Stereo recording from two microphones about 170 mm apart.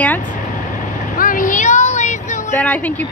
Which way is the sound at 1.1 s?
55° left (ahead or behind).